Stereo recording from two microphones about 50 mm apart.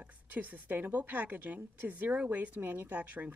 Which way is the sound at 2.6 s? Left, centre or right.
Right.